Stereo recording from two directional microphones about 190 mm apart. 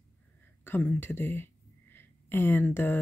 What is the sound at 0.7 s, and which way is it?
Speech, 10° left (ahead or behind).